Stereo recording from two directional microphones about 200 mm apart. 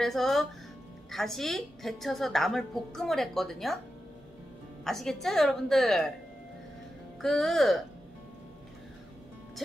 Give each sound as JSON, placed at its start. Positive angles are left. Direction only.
{"t": 0.0, "sound": "a woman's voice", "side_deg": 0}
{"t": 4.8, "sound": "a woman's voice", "side_deg": 0}
{"t": 7.2, "sound": "a woman's voice", "side_deg": 0}